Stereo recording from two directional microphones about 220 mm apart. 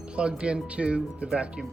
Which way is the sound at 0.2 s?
5° right (ahead or behind).